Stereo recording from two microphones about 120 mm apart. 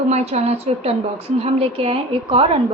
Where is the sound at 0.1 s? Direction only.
65° right (ahead or behind).